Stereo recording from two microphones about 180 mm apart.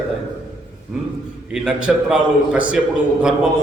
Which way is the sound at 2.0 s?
5° right (ahead or behind).